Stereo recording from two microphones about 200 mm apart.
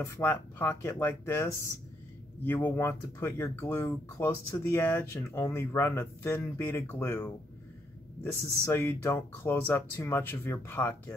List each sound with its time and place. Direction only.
0.0 s speech: 10° left (ahead or behind)
8.4 s speech: 15° right (ahead or behind)
8.6 s speech: 10° left (ahead or behind)